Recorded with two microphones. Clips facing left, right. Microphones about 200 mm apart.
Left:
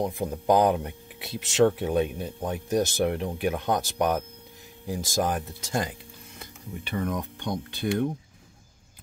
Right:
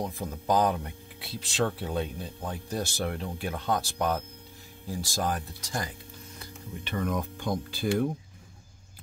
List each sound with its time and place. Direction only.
0.0 s speech: 20° left (ahead or behind)
6.9 s speech: 10° left (ahead or behind)
7.2 s speech: centre (ahead or behind)